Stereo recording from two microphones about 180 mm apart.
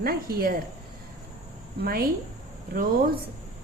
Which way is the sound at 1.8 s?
55° right (ahead or behind).